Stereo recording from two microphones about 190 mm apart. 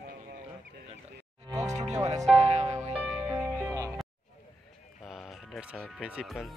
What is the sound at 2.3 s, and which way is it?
Music, 35° right (ahead or behind).